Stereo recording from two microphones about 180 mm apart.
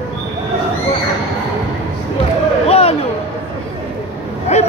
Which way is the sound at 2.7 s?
35° left (ahead or behind).